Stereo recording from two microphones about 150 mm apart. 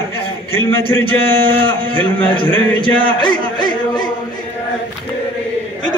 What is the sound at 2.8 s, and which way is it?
Music, 35° left (ahead or behind).